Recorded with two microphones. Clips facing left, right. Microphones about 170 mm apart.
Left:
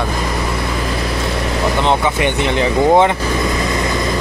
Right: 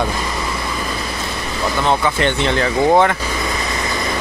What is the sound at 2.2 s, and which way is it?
Speech, 20° left (ahead or behind).